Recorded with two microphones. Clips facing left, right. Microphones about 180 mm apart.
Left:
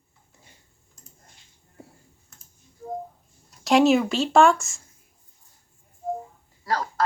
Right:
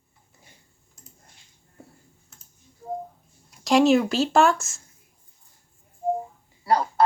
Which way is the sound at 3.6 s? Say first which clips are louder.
Even; centre (ahead or behind).